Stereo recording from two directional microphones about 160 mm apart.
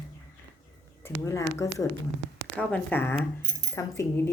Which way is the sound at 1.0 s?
15° left (ahead or behind).